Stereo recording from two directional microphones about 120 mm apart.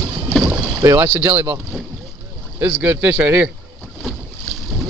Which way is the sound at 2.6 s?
10° right (ahead or behind).